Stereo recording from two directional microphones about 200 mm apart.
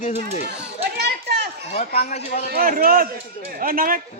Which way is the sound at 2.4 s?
50° right (ahead or behind).